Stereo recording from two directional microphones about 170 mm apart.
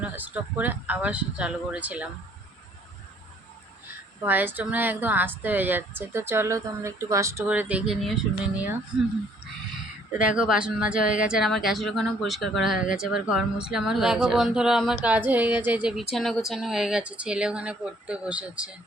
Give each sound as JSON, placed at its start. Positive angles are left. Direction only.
{"t": 0.0, "sound": "a woman's voice", "side_deg": -10}
{"t": 4.2, "sound": "a woman's voice", "side_deg": -10}
{"t": 10.2, "sound": "speech", "side_deg": -5}
{"t": 12.8, "sound": "speech", "side_deg": 50}
{"t": 13.1, "sound": "speech", "side_deg": -5}